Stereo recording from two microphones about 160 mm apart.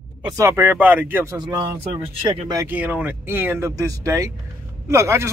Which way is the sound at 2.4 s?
20° right (ahead or behind).